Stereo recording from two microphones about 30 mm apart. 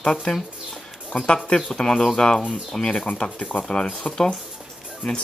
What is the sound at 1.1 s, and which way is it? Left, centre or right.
Speech, left.